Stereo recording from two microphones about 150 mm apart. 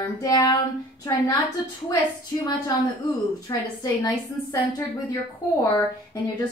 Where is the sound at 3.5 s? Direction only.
25° left (ahead or behind).